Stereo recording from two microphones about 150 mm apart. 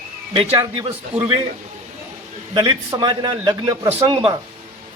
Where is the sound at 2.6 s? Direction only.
25° right (ahead or behind).